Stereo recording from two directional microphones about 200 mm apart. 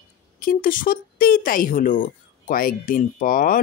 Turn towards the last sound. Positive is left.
turn(degrees=45)  # may be behind; listen again after turning